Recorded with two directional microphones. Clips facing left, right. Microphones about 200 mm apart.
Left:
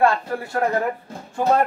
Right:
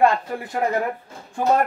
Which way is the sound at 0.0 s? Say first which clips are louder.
Even; 15° right (ahead or behind).